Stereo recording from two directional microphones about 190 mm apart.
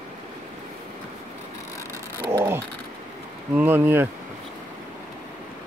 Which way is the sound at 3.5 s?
10° right (ahead or behind).